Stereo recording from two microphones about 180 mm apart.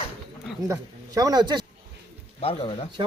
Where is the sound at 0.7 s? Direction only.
20° right (ahead or behind).